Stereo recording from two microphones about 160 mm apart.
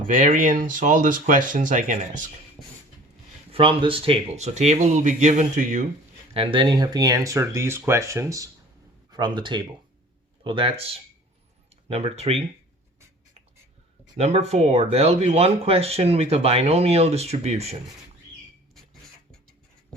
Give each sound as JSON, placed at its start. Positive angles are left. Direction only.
{"t": 0.1, "sound": "speech", "side_deg": -50}
{"t": 2.6, "sound": "a sound", "side_deg": 0}
{"t": 3.5, "sound": "speech", "side_deg": -35}
{"t": 6.3, "sound": "speech", "side_deg": -35}
{"t": 14.2, "sound": "speech", "side_deg": -45}